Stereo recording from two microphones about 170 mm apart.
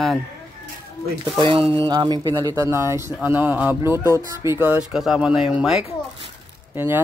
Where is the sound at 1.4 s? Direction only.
30° right (ahead or behind).